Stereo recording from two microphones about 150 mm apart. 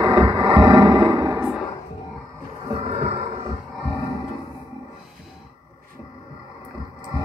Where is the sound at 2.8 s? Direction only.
45° right (ahead or behind).